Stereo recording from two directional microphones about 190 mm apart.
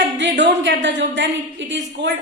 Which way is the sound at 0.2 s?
70° right (ahead or behind).